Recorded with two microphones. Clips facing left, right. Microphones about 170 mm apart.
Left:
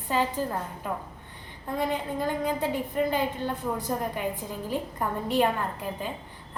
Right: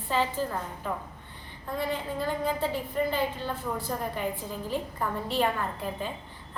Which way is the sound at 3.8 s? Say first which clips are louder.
Left 2 dB; 15° left (ahead or behind).